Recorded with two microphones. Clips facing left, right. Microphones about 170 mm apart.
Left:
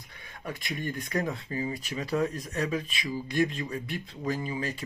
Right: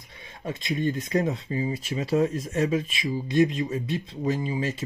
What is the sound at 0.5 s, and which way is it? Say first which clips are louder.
Speech: right 7 dB; 20° right (ahead or behind).